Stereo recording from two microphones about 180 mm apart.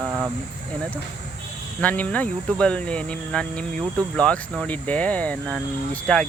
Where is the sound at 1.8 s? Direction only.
10° left (ahead or behind).